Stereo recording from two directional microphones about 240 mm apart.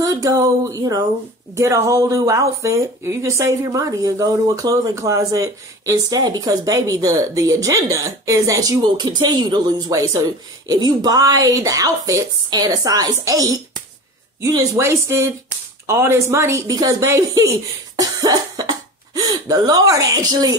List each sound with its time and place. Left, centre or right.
0.0 s speech: centre
17.9 s cough: centre